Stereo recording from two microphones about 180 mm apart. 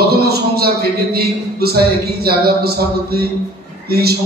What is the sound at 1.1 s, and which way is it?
Speech, 60° right (ahead or behind).